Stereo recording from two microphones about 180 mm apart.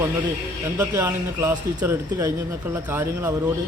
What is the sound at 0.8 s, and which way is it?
A man's voice, 15° right (ahead or behind).